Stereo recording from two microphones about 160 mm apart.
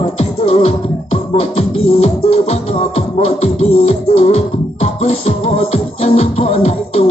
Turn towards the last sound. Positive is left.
turn(degrees=40)  # may be behind; listen again after turning